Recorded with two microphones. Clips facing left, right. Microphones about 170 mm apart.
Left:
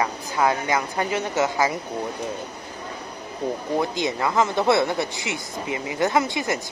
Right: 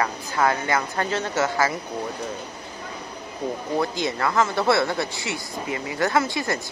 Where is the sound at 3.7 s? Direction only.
20° left (ahead or behind).